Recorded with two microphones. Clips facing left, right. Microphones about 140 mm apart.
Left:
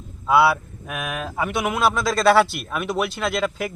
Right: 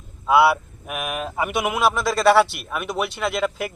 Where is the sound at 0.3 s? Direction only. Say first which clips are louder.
Right 1 dB; 5° right (ahead or behind).